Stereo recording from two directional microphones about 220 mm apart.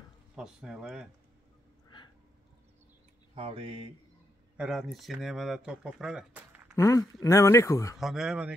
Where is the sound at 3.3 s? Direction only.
25° right (ahead or behind).